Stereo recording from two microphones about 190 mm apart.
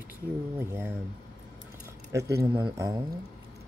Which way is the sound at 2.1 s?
15° right (ahead or behind).